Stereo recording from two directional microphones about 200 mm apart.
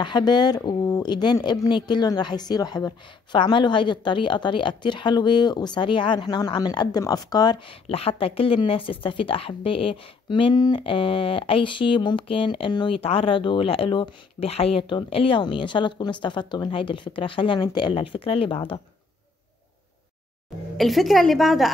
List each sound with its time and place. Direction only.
0.0 s speech: 20° left (ahead or behind)
20.7 s a woman's voice: centre (ahead or behind)